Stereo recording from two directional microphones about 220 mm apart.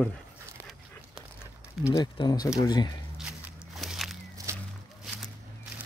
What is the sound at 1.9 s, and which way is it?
Speech, 20° left (ahead or behind).